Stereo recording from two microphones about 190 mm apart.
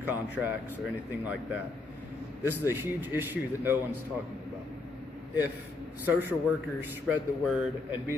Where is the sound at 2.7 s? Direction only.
10° right (ahead or behind).